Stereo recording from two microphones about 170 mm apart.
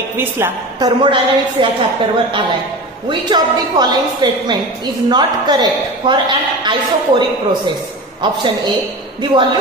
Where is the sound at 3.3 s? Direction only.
25° right (ahead or behind).